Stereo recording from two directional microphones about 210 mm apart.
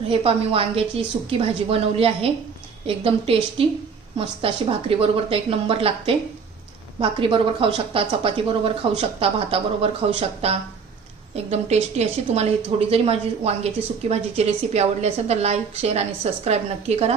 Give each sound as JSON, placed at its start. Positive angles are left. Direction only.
{"t": 0.1, "sound": "a woman's voice", "side_deg": -25}